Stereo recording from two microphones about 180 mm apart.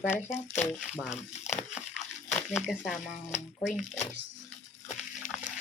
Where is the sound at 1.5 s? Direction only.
40° left (ahead or behind).